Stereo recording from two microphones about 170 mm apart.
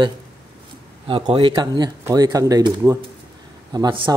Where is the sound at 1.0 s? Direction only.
30° right (ahead or behind).